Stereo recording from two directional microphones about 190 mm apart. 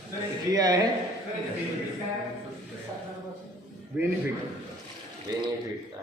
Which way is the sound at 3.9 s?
5° right (ahead or behind).